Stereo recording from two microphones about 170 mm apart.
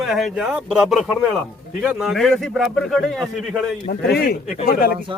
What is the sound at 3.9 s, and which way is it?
Speech, 70° left (ahead or behind).